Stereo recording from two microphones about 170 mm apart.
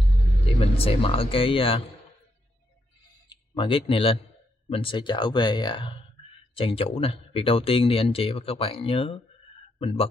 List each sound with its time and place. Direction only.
0.6 s speech: 35° left (ahead or behind)
3.3 s a man's voice: 30° left (ahead or behind)